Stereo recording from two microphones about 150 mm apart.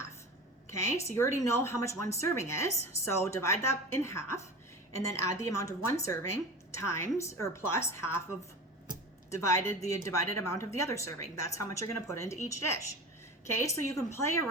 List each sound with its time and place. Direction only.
0.7 s a woman's voice: 20° left (ahead or behind)
9.3 s a woman's voice: 20° left (ahead or behind)